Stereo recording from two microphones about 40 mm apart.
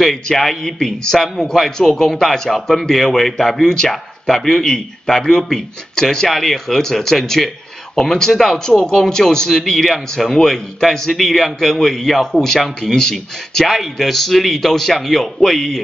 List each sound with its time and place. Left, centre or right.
0.0 s speech: centre